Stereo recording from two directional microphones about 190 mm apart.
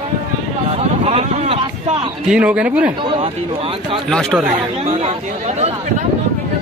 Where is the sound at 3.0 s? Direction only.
25° right (ahead or behind).